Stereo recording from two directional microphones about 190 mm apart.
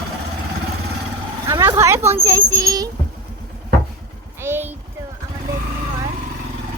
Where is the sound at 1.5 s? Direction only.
20° right (ahead or behind).